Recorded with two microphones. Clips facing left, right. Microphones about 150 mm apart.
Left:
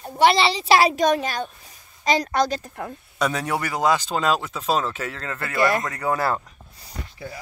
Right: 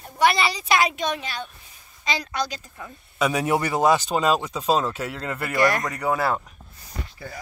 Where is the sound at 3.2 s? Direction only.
10° right (ahead or behind).